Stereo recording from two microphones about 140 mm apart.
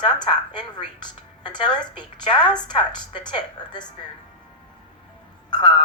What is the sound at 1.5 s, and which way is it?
A woman's voice, 30° left (ahead or behind).